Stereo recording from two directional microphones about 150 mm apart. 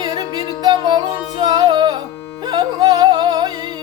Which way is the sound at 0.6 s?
30° right (ahead or behind).